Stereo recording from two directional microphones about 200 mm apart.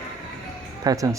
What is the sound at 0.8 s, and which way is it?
Speech, 20° right (ahead or behind).